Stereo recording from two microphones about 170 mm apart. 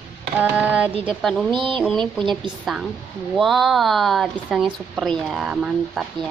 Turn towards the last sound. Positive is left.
turn(degrees=-5)  # may be behind; listen again after turning